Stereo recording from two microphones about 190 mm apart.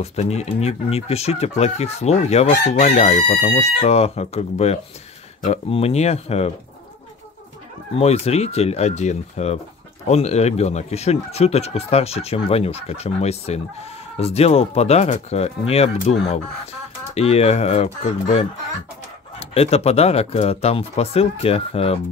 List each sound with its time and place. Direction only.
0.0 s speech: 35° left (ahead or behind)
7.9 s speech: 35° left (ahead or behind)
19.5 s speech: 30° left (ahead or behind)